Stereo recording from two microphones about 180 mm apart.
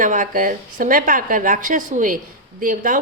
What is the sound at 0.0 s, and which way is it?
A woman's voice, 45° right (ahead or behind).